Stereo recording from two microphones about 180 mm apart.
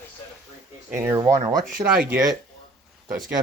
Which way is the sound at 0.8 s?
10° right (ahead or behind).